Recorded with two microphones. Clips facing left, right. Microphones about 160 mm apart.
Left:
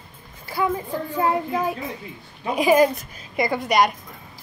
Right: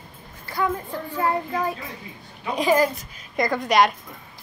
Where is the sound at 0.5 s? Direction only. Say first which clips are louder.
Left 1 dB; 5° left (ahead or behind).